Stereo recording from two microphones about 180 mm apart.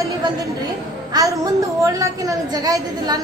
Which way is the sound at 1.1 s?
20° right (ahead or behind).